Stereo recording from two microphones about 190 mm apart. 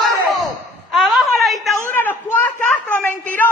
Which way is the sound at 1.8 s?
10° left (ahead or behind).